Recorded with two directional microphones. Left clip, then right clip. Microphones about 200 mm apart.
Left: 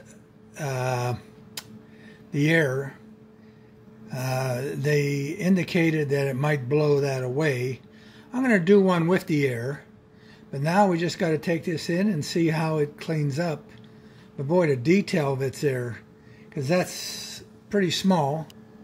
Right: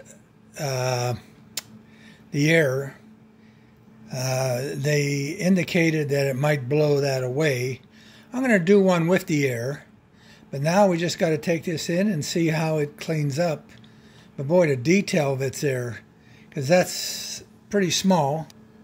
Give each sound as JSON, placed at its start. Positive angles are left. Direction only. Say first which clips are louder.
{"t": 0.6, "sound": "a sound", "louder": "right 2 dB", "side_deg": -15}
{"t": 2.3, "sound": "speech", "louder": "right 2 dB", "side_deg": -15}
{"t": 4.1, "sound": "speech", "louder": "right 3 dB", "side_deg": -15}